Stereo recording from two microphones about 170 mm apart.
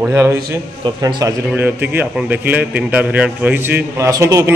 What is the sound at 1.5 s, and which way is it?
A man's voice, 10° right (ahead or behind).